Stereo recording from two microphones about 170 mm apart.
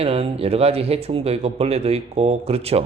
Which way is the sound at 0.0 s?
35° right (ahead or behind).